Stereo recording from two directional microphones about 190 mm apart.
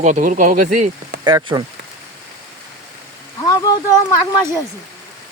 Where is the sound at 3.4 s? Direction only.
20° left (ahead or behind).